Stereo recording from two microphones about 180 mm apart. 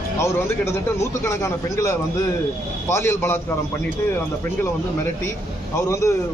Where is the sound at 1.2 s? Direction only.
15° left (ahead or behind).